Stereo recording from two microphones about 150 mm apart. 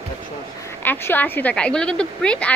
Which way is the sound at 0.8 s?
15° left (ahead or behind).